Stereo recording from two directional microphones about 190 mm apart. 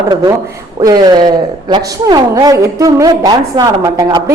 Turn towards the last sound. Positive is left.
turn(degrees=-20)  # may be behind; listen again after turning